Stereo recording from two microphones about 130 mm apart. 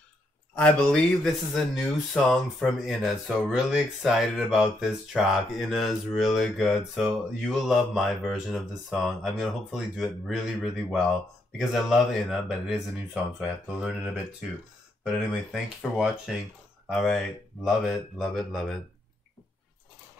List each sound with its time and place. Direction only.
0.6 s speech: 10° left (ahead or behind); by 14.2 s 10° right (ahead or behind)
15.5 s speech: 5° right (ahead or behind)